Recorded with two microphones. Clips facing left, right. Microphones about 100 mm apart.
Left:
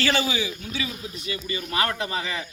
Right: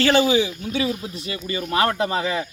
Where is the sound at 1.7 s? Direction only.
35° right (ahead or behind).